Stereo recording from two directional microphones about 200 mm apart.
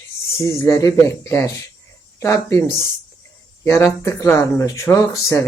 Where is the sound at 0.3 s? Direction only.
15° left (ahead or behind).